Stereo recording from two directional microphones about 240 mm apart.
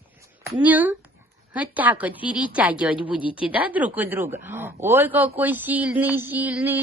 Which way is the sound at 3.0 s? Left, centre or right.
Left.